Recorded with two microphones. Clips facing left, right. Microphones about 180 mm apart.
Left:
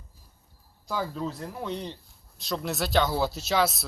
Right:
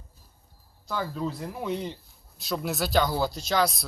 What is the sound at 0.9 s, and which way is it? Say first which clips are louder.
Speech: even; 5° left (ahead or behind).